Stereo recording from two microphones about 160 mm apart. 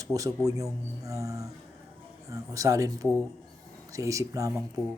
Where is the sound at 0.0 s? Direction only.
20° right (ahead or behind).